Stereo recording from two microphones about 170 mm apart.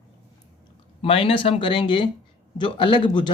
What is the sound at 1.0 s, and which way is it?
Speech, 35° left (ahead or behind).